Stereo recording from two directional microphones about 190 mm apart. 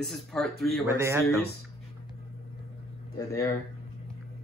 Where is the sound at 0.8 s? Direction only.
15° right (ahead or behind).